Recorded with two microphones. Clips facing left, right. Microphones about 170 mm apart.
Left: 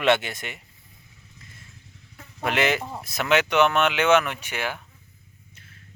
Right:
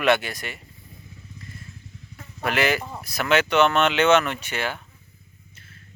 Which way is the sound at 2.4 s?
20° left (ahead or behind).